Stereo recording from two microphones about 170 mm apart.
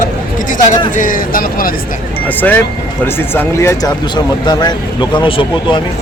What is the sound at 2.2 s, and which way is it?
Speech, 10° left (ahead or behind).